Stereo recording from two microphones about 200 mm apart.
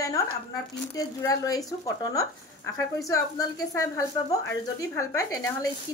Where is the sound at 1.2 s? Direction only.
15° left (ahead or behind).